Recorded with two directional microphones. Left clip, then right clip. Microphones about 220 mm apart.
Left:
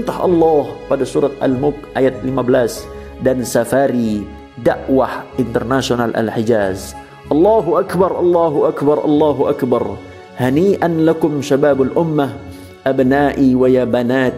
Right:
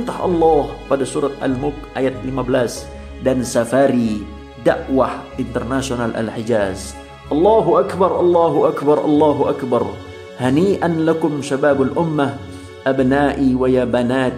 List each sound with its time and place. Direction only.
0.0 s speech: 15° left (ahead or behind)
7.2 s speech: 35° left (ahead or behind)
8.5 s speech: 15° left (ahead or behind)